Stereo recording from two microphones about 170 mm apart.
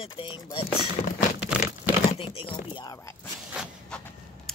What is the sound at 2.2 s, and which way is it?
Speech, 30° left (ahead or behind).